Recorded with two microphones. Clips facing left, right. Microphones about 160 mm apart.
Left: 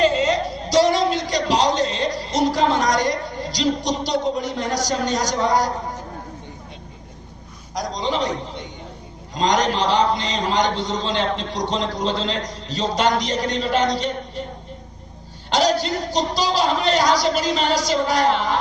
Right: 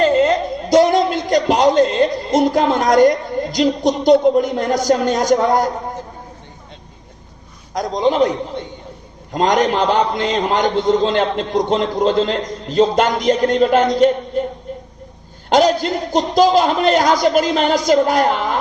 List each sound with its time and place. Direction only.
0.0 s a sound: 55° right (ahead or behind)
7.7 s a man's voice: 55° right (ahead or behind)
9.3 s a man's voice: 50° right (ahead or behind)
15.4 s a man's voice: 50° right (ahead or behind)